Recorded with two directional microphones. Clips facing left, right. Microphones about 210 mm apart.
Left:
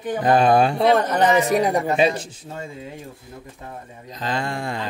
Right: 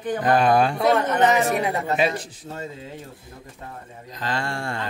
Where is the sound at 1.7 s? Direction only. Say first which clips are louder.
Left 4 dB; 15° left (ahead or behind).